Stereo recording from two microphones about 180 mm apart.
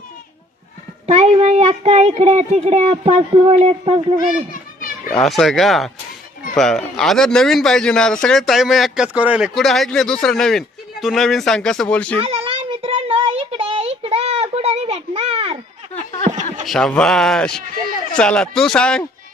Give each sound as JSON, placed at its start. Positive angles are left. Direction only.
{"t": 1.0, "sound": "speech", "side_deg": -35}
{"t": 5.1, "sound": "a man's voice", "side_deg": 0}
{"t": 12.2, "sound": "a sound", "side_deg": -35}
{"t": 16.6, "sound": "a man's voice", "side_deg": 0}